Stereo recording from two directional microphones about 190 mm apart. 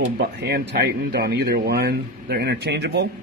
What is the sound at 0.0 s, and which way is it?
Speech, 60° right (ahead or behind).